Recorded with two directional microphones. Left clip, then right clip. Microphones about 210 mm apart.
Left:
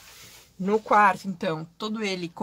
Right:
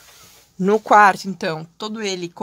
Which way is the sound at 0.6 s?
50° right (ahead or behind).